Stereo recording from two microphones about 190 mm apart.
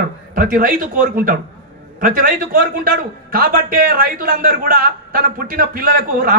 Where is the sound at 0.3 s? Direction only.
45° right (ahead or behind).